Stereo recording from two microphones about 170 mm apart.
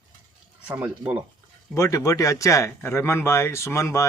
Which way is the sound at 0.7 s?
10° right (ahead or behind).